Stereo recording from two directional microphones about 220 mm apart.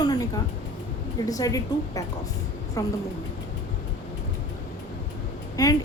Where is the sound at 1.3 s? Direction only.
15° left (ahead or behind).